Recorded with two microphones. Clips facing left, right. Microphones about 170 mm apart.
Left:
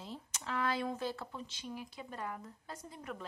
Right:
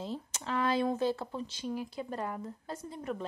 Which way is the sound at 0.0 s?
30° right (ahead or behind).